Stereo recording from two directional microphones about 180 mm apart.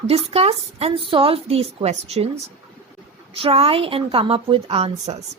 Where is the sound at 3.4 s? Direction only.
30° right (ahead or behind).